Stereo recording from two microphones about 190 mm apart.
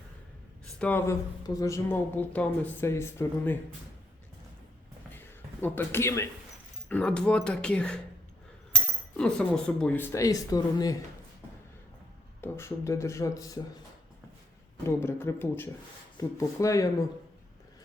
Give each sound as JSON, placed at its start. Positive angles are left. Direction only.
{"t": 0.8, "sound": "speech", "side_deg": 10}
{"t": 5.5, "sound": "speech", "side_deg": 10}
{"t": 12.4, "sound": "speech", "side_deg": 15}
{"t": 14.8, "sound": "speech", "side_deg": 15}